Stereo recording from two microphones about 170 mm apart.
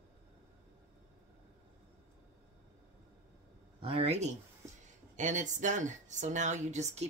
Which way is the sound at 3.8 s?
35° right (ahead or behind).